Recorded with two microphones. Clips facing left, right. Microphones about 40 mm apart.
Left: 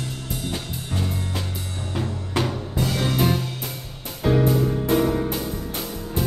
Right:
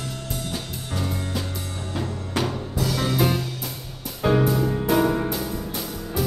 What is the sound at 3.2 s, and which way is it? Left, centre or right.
Music, centre.